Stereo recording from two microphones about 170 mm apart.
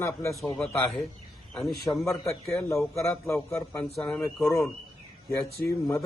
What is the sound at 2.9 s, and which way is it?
A man's voice, centre (ahead or behind).